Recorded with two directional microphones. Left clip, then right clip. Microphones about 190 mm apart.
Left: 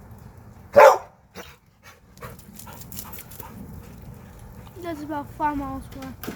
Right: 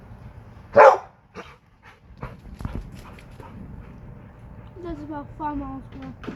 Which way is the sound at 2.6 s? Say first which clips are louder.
Right 5 dB; 10° left (ahead or behind).